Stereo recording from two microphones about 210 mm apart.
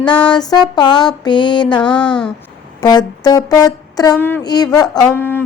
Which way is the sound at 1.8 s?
5° left (ahead or behind).